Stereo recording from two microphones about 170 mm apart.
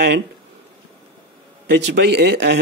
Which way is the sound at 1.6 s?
90° right.